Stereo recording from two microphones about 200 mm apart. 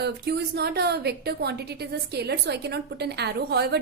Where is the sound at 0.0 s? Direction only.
55° right (ahead or behind).